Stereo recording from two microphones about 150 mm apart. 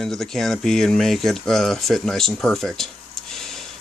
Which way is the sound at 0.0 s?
Centre (ahead or behind).